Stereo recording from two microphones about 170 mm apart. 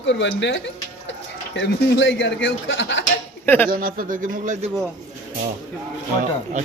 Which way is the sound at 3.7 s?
55° right (ahead or behind).